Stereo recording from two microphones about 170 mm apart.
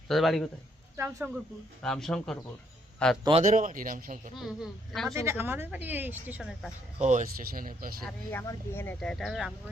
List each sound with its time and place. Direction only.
0.1 s speech: centre (ahead or behind)
0.9 s a woman's voice: 10° right (ahead or behind)
1.8 s speech: 5° left (ahead or behind)
3.4 s speech: 50° right (ahead or behind)
4.4 s speech: centre (ahead or behind)
5.0 s a woman's voice: 15° right (ahead or behind)
7.0 s speech: 45° right (ahead or behind)
8.0 s speech: 10° left (ahead or behind)